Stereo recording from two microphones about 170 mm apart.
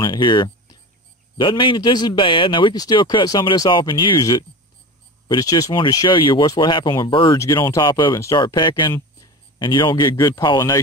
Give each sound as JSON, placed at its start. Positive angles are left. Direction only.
{"t": 0.0, "sound": "a man's voice", "side_deg": 25}